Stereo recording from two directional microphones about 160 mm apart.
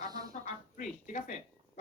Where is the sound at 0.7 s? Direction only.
50° left (ahead or behind).